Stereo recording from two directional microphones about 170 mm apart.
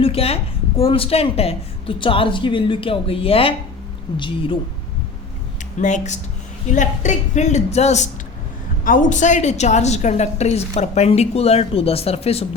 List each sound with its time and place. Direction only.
0.0 s a sound: 35° left (ahead or behind)
0.8 s a woman's voice: 35° left (ahead or behind)
5.8 s speech: 45° left (ahead or behind)
8.8 s a woman's voice: 50° left (ahead or behind); by 12.5 s 35° left (ahead or behind)